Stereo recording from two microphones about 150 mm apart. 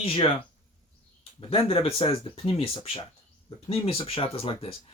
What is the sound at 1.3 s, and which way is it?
Speech, 40° left (ahead or behind).